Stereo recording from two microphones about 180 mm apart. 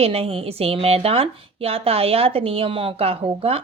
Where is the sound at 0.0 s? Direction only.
35° right (ahead or behind).